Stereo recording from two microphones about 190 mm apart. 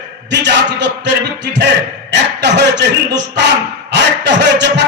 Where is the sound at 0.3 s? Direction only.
65° right (ahead or behind).